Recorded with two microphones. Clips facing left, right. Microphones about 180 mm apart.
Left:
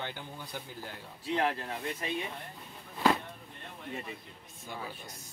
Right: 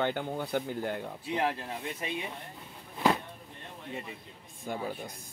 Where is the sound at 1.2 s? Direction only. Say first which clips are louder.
Left 1 dB; 15° right (ahead or behind).